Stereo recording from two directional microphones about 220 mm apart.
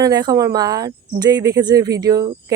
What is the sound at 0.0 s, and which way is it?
Speech, 20° right (ahead or behind).